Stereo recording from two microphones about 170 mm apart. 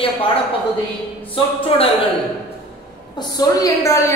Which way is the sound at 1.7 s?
35° left (ahead or behind).